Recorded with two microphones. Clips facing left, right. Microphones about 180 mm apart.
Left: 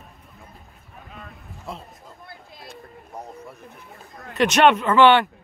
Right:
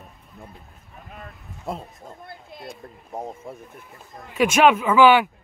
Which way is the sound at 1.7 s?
55° right (ahead or behind).